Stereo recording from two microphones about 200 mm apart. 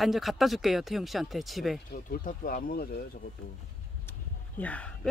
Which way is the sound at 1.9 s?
45° left (ahead or behind).